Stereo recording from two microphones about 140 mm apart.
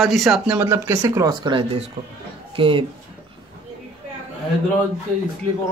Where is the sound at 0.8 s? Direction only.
20° right (ahead or behind); by 2.8 s 40° right (ahead or behind).